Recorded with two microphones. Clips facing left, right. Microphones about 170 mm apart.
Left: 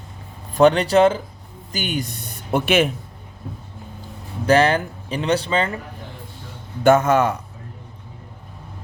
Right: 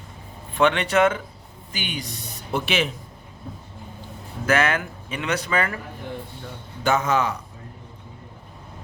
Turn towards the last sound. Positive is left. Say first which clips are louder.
# left 7 dB
turn(degrees=50)  # may be behind; listen again after turning